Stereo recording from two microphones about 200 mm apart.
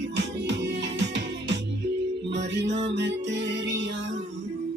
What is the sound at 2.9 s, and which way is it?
Music, 60° right (ahead or behind).